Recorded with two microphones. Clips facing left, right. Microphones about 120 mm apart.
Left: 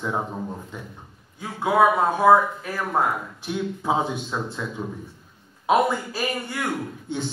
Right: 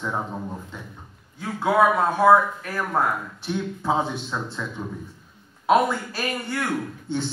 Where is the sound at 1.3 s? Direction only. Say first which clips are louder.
Even; 20° left (ahead or behind).